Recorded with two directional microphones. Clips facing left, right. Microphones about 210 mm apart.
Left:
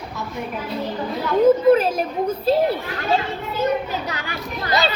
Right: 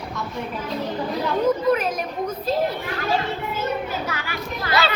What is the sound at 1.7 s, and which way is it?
Speech, 30° left (ahead or behind).